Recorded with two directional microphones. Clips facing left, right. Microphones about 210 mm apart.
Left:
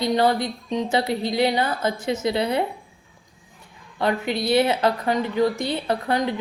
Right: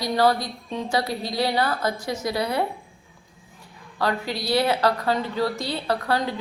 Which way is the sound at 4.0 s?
20° left (ahead or behind).